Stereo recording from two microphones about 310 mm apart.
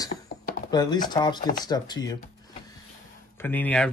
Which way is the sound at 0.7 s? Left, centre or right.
Centre.